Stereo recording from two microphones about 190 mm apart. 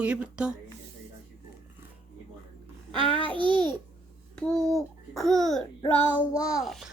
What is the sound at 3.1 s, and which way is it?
Babbling, 30° left (ahead or behind).